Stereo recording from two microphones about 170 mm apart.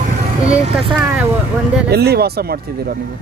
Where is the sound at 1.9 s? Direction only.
70° right (ahead or behind).